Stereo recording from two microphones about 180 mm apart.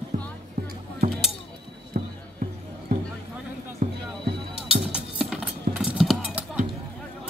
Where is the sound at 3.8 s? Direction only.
45° right (ahead or behind).